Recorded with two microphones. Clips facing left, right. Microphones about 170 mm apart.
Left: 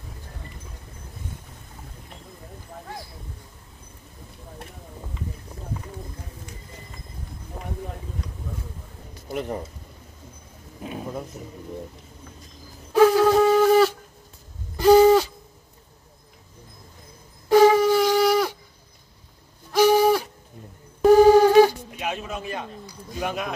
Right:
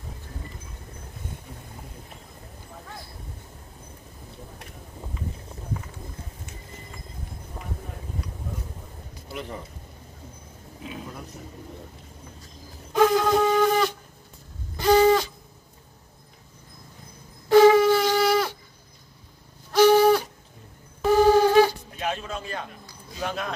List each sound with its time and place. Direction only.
9.3 s speech: 45° left (ahead or behind)
12.9 s wind instrument: 5° left (ahead or behind)
14.8 s a sound: 5° left (ahead or behind)
17.5 s wind instrument: 10° left (ahead or behind)
19.7 s a sound: 10° left (ahead or behind)
23.2 s a man's voice: 15° left (ahead or behind)